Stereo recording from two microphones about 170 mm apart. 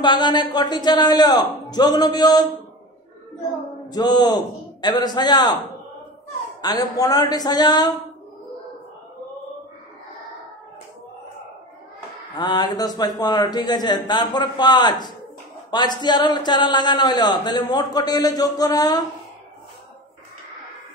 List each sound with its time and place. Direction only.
0.0 s a man's voice: 25° left (ahead or behind)
3.9 s a man's voice: 25° left (ahead or behind)
6.6 s a man's voice: 20° left (ahead or behind)
12.4 s a man's voice: 25° left (ahead or behind)